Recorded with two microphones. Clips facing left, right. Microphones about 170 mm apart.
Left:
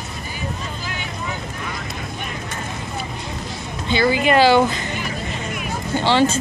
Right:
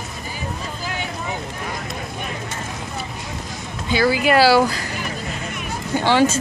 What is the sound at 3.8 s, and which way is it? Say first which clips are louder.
Speech: even; 5° right (ahead or behind).